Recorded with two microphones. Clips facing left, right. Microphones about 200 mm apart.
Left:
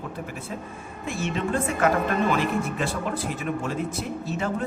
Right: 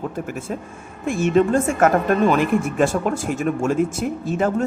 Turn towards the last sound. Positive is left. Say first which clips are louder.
# right 7 dB
turn(degrees=-50)  # may be behind; listen again after turning